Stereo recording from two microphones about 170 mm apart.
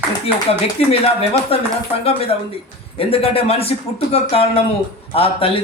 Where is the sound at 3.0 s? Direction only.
35° left (ahead or behind).